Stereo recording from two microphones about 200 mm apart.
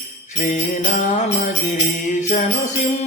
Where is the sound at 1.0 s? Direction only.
35° left (ahead or behind).